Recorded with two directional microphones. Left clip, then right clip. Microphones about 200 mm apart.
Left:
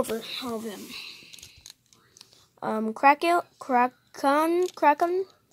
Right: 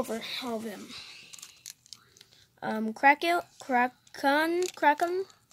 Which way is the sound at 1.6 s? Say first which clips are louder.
Right 2 dB; 25° right (ahead or behind).